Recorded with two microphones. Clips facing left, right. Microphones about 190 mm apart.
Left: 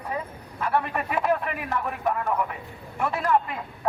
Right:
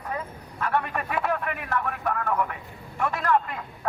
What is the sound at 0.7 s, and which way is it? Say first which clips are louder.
A man's voice: left 2 dB; 10° left (ahead or behind).